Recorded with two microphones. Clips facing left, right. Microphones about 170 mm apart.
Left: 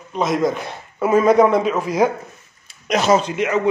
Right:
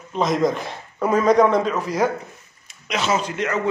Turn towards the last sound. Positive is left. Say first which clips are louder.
# left 4 dB
turn(degrees=15)  # may be behind; listen again after turning